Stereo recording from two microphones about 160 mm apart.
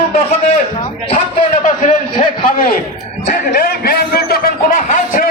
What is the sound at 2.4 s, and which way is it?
Speech, 60° left (ahead or behind).